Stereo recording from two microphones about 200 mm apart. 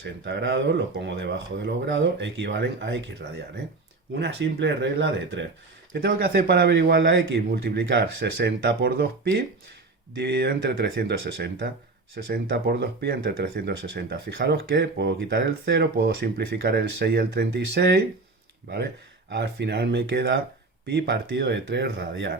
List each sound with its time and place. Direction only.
0.0 s speech: 60° right (ahead or behind)
5.9 s speech: 50° right (ahead or behind)
19.3 s speech: 60° right (ahead or behind)